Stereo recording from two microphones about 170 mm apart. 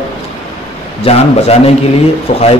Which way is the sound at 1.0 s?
35° left (ahead or behind).